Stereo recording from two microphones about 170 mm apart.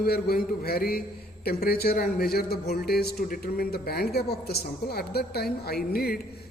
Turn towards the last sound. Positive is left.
turn(degrees=65)  # may be behind; listen again after turning